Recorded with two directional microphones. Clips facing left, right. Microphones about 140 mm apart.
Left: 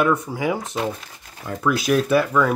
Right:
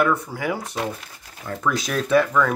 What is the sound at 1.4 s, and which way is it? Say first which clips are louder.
Speech: left 3 dB; 10° left (ahead or behind).